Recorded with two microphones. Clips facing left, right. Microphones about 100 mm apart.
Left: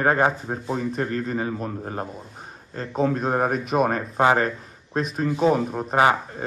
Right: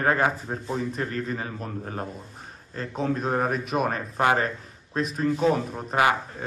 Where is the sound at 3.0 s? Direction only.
35° left (ahead or behind).